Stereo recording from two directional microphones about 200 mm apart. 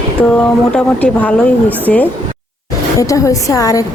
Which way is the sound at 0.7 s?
5° left (ahead or behind).